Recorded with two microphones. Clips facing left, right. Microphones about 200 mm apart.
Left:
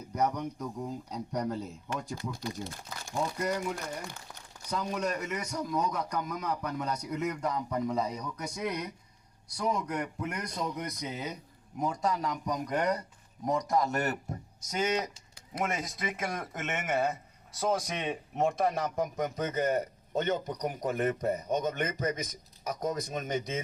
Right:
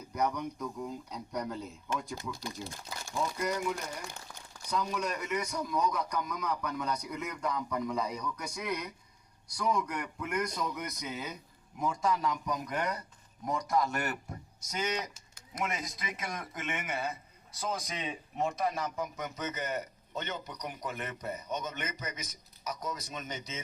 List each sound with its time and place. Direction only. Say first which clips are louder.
0.1 s a man's voice: left 2 dB; 40° left (ahead or behind)
5.5 s a man's voice: left 3 dB; 30° left (ahead or behind)
8.2 s speech: even; 20° left (ahead or behind)
8.5 s a man's voice: left 5 dB; 40° left (ahead or behind)
10.4 s speech: even; 20° left (ahead or behind)
10.8 s a man's voice: left 2 dB; 40° left (ahead or behind)
15.1 s a sound: left 5 dB; 30° left (ahead or behind)
15.6 s a man's voice: left 3 dB; 50° left (ahead or behind)